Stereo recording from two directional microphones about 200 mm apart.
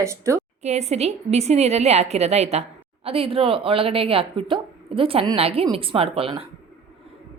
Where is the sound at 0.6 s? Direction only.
35° right (ahead or behind).